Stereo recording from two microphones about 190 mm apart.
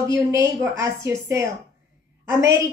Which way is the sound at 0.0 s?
15° right (ahead or behind).